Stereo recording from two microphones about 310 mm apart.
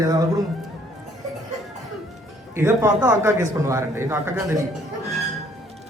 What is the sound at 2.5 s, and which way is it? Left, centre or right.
A man's voice, centre.